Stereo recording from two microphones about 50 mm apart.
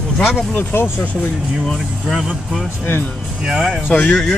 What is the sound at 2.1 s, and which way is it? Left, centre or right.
Speech, centre.